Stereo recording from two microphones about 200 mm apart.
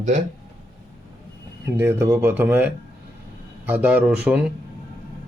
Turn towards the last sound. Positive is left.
turn(degrees=-5)  # may be behind; listen again after turning